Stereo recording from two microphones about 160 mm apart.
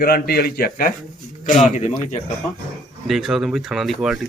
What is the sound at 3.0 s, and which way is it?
Speech, centre (ahead or behind).